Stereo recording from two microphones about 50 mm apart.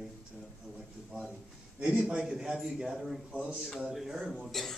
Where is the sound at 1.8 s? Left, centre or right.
Centre.